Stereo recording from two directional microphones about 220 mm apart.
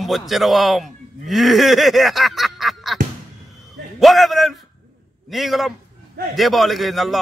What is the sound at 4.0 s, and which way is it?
A man's voice, centre (ahead or behind).